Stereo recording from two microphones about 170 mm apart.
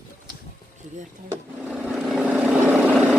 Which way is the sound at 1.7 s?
5° right (ahead or behind).